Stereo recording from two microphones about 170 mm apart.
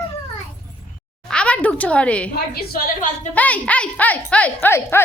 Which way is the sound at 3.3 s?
10° left (ahead or behind).